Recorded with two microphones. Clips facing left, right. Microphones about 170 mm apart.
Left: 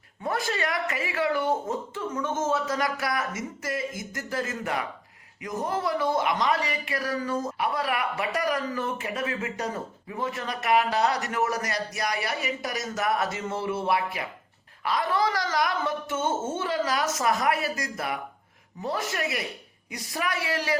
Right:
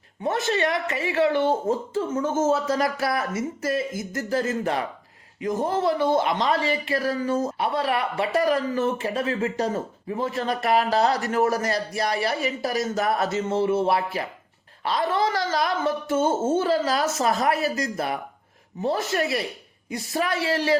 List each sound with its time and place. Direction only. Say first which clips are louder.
0.2 s a man's voice: right 5 dB; 25° right (ahead or behind)